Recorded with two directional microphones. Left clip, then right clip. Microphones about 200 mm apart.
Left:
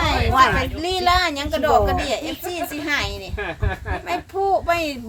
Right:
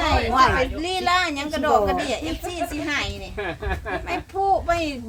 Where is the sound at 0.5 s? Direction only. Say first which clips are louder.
Left 1 dB; 45° left (ahead or behind).